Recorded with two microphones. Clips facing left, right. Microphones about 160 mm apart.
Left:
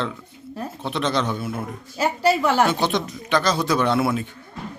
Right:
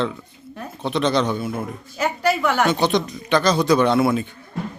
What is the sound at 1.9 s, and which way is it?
Speech, 30° left (ahead or behind).